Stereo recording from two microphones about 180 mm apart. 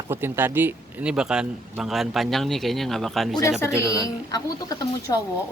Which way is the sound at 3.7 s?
20° left (ahead or behind).